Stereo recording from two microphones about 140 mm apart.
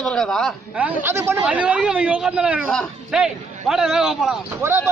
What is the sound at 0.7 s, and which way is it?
A man's voice, 15° right (ahead or behind).